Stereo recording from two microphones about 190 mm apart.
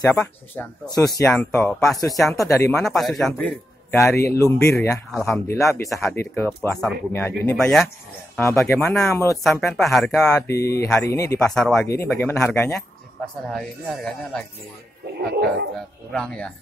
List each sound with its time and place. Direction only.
0.1 s speech: 10° left (ahead or behind)
2.2 s speech: 15° left (ahead or behind)
2.8 s speech: centre (ahead or behind)
4.2 s speech: 15° left (ahead or behind)
5.1 s speech: centre (ahead or behind)
5.5 s speech: 15° left (ahead or behind)
7.5 s speech: centre (ahead or behind)
8.4 s speech: 10° left (ahead or behind)
9.4 s speech: centre (ahead or behind)
10.4 s speech: 15° left (ahead or behind)
11.3 s speech: 5° left (ahead or behind)
11.9 s speech: 15° left (ahead or behind)
15.3 s speech: 60° right (ahead or behind)
16.1 s speech: 5° left (ahead or behind)